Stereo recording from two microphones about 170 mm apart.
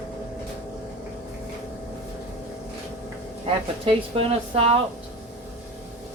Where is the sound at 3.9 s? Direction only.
35° right (ahead or behind).